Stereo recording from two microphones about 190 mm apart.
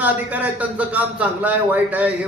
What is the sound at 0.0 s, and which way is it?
Speech, 10° right (ahead or behind).